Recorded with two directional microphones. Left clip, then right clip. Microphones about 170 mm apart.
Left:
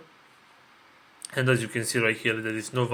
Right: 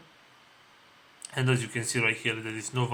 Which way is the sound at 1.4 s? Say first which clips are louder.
Left 4 dB; 20° left (ahead or behind).